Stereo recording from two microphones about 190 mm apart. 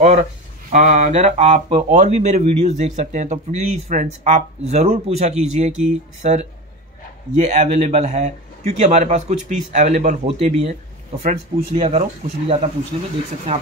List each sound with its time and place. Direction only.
0.7 s speech: 40° right (ahead or behind)